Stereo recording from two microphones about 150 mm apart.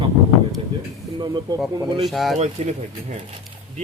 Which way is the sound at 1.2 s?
30° right (ahead or behind).